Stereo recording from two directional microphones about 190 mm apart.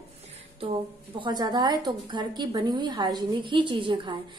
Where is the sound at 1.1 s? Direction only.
25° right (ahead or behind).